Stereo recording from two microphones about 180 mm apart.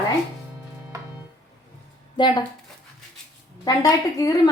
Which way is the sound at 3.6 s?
20° left (ahead or behind).